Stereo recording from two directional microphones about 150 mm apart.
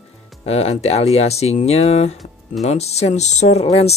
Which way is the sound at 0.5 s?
45° left (ahead or behind).